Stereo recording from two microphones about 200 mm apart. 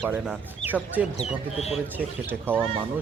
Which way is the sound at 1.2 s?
30° left (ahead or behind).